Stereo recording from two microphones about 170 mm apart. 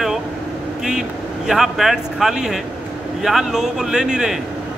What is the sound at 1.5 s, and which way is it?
Speech, centre (ahead or behind).